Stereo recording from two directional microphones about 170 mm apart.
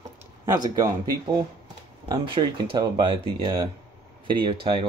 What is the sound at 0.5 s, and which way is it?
Speech, 20° right (ahead or behind).